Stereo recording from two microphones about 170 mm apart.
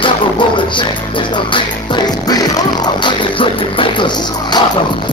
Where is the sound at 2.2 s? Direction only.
25° left (ahead or behind).